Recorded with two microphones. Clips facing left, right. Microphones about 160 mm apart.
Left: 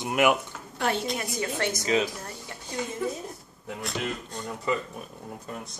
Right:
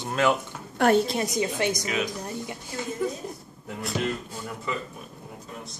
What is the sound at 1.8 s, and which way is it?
Speech, 30° left (ahead or behind).